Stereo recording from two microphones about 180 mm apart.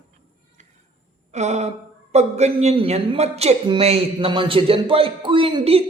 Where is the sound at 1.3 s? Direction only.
40° right (ahead or behind).